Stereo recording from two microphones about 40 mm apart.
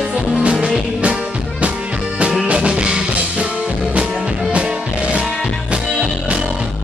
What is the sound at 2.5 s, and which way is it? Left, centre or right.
Music, right.